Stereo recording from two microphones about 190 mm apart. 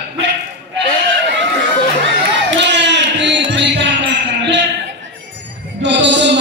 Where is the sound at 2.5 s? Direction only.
65° right (ahead or behind).